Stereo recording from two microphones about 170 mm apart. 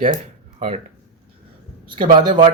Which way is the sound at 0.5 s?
35° right (ahead or behind).